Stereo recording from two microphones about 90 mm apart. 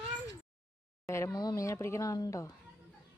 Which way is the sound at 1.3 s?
50° left (ahead or behind).